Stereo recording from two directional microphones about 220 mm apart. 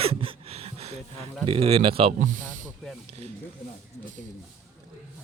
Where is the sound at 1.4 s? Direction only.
25° right (ahead or behind).